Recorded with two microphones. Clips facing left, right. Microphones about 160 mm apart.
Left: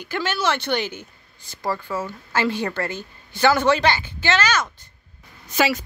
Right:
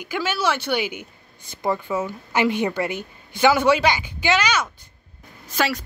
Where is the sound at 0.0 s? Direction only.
10° right (ahead or behind).